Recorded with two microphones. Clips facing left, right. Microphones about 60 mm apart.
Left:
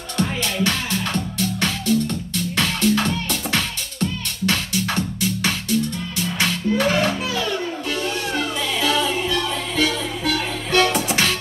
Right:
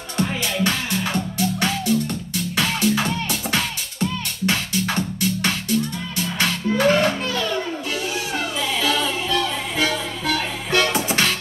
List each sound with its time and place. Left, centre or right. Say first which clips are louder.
0.2 s music: even; centre
4.9 s music: even; centre
9.8 s music: left 1 dB; centre
10.9 s music: left 1 dB; right